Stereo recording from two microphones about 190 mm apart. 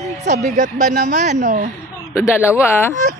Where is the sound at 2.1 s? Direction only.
15° left (ahead or behind).